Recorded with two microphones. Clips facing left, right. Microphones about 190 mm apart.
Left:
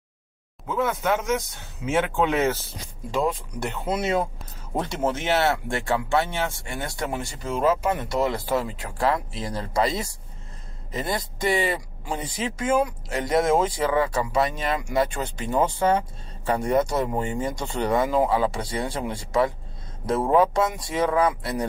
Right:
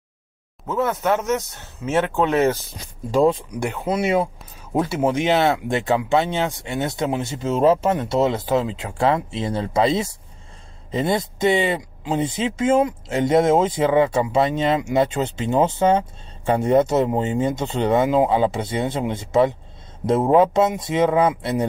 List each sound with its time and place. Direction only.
0.8 s speech: 10° left (ahead or behind)
3.5 s speech: 10° right (ahead or behind)